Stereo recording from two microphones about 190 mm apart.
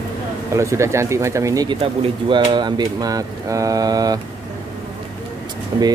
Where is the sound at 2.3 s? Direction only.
25° right (ahead or behind).